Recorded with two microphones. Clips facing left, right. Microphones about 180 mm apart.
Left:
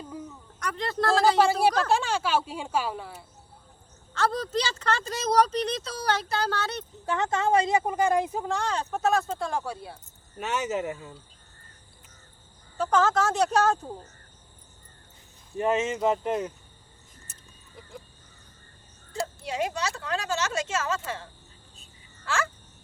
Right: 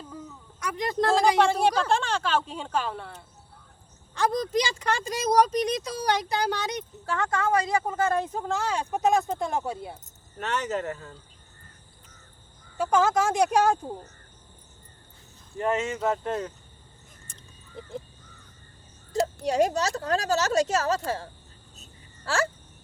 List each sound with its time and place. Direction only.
0.6 s speech: 10° right (ahead or behind)
1.4 s speech: 5° left (ahead or behind)
4.1 s speech: 15° right (ahead or behind)
7.0 s a woman's voice: 20° left (ahead or behind); by 10.0 s 20° right (ahead or behind)
10.3 s speech: 10° left (ahead or behind)
12.7 s speech: 10° right (ahead or behind)
15.5 s speech: 20° left (ahead or behind)
17.3 s a sound: 5° left (ahead or behind)
17.8 s speech: 30° right (ahead or behind)
19.2 s speech: 40° right (ahead or behind)
21.8 s a sound: 35° right (ahead or behind)